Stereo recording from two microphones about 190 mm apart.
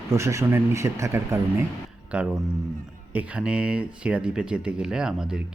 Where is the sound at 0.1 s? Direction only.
15° right (ahead or behind).